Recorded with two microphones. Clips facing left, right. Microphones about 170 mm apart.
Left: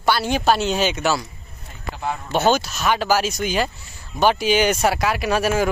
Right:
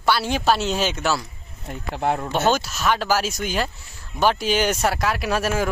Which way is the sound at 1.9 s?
60° right (ahead or behind).